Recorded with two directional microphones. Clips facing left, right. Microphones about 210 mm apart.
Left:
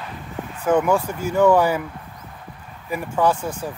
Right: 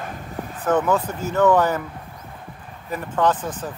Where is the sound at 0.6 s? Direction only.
10° left (ahead or behind).